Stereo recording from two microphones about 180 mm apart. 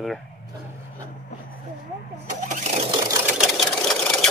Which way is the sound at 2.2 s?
45° right (ahead or behind).